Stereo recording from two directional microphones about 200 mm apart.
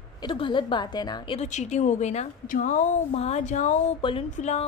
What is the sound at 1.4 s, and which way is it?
A woman's voice, 35° left (ahead or behind).